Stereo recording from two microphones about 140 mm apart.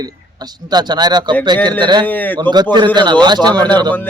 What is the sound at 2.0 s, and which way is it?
Speech, 10° left (ahead or behind).